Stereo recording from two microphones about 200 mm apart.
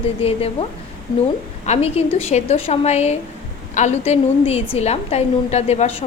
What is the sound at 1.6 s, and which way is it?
A woman's voice, 35° left (ahead or behind).